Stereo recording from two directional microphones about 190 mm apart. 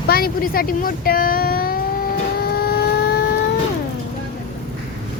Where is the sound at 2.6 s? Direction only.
55° left (ahead or behind).